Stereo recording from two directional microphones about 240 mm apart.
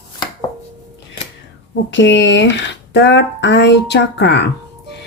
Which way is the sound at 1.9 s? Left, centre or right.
Left.